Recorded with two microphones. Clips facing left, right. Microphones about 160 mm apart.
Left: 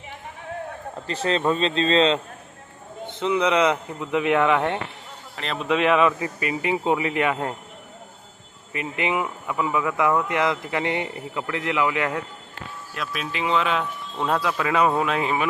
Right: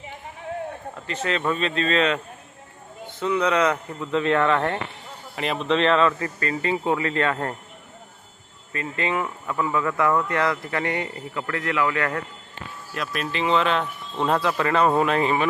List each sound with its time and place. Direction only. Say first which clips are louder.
1.0 s a man's voice: left 3 dB; 35° left (ahead or behind); by 7.5 s 15° left (ahead or behind)
8.7 s speech: left 1 dB; 15° left (ahead or behind)
12.9 s speech: right 2 dB; centre (ahead or behind)
14.2 s speech: right 2 dB; 5° right (ahead or behind)